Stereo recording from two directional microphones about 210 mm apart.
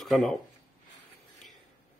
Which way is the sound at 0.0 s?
Centre (ahead or behind).